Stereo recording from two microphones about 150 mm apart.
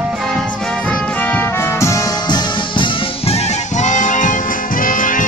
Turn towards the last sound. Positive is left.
turn(degrees=60)  # may be behind; listen again after turning